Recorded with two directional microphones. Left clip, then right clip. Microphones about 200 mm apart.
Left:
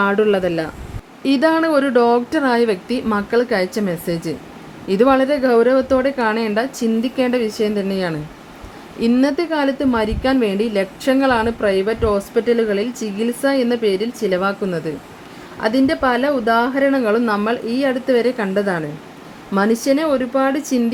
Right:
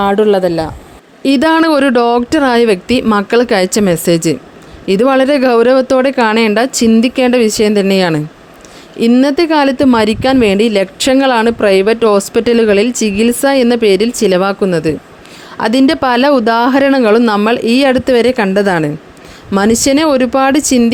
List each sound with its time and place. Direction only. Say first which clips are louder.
0.0 s a woman's voice: right 6 dB; 25° right (ahead or behind)